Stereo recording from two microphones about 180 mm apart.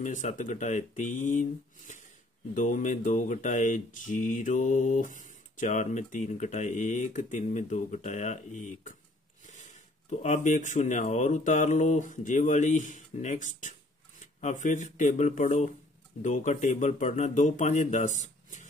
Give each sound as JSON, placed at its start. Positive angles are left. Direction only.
{"t": 0.0, "sound": "speech", "side_deg": 45}